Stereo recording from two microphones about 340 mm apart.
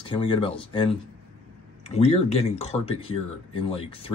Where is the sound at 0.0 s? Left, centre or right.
Centre.